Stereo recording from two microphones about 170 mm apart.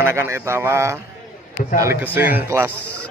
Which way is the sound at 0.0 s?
15° right (ahead or behind).